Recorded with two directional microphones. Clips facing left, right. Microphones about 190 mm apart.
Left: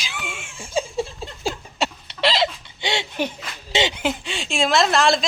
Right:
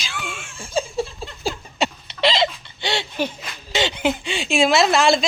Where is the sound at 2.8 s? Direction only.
20° left (ahead or behind).